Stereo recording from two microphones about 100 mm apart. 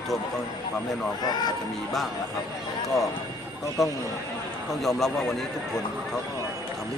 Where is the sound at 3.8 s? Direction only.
Centre (ahead or behind).